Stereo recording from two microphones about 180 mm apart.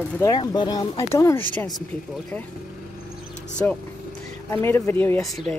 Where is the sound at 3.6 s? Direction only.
10° left (ahead or behind).